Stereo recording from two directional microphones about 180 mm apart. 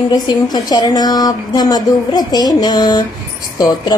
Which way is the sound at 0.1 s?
20° left (ahead or behind).